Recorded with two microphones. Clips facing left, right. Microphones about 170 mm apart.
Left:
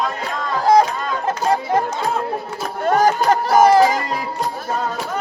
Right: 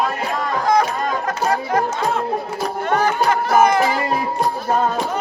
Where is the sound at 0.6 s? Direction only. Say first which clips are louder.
Left 4 dB; 35° left (ahead or behind).